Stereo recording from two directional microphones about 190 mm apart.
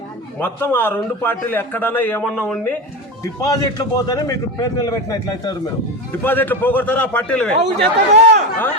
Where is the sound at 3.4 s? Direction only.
20° left (ahead or behind).